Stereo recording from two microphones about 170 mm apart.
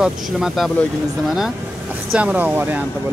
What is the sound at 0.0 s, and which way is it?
Speech, centre (ahead or behind).